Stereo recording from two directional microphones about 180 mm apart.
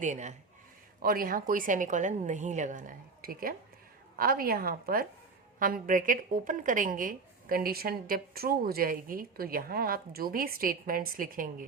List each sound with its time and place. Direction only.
0.0 s a woman's voice: 40° right (ahead or behind)
1.0 s a woman's voice: 55° right (ahead or behind)